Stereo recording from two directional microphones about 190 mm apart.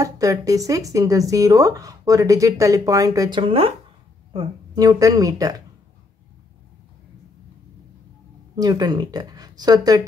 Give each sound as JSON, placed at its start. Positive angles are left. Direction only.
{"t": 0.0, "sound": "speech", "side_deg": -20}
{"t": 8.5, "sound": "speech", "side_deg": -20}